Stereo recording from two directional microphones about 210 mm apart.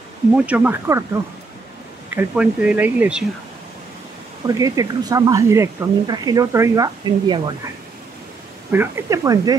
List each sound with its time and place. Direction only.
0.5 s speech: 10° right (ahead or behind)
2.1 s speech: 5° right (ahead or behind)
4.5 s speech: 15° right (ahead or behind)
8.7 s speech: 15° right (ahead or behind)